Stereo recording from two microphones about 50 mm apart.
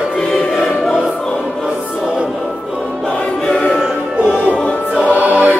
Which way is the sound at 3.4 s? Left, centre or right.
Centre.